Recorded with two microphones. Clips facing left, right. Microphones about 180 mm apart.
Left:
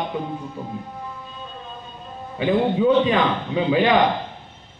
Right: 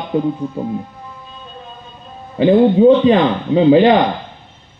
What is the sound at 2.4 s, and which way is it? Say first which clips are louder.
A man's voice: right 9 dB; 30° right (ahead or behind).